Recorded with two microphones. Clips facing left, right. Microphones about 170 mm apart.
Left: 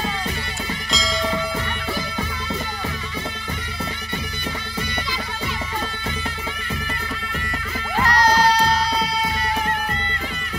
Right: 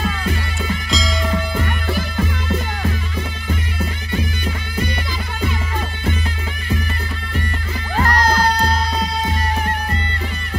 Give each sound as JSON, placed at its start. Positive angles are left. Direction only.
{"t": 0.8, "sound": "music", "side_deg": 0}
{"t": 8.0, "sound": "music", "side_deg": -50}